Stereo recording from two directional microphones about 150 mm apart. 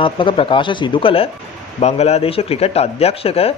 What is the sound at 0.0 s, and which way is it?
Speech, 35° left (ahead or behind).